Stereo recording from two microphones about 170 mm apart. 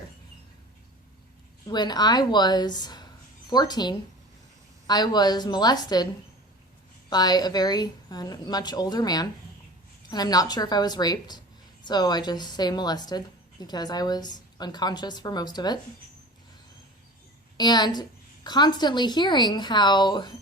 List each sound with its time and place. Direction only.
1.6 s a woman's voice: 25° left (ahead or behind)
7.1 s a woman's voice: 25° left (ahead or behind)
17.6 s a woman's voice: 25° left (ahead or behind)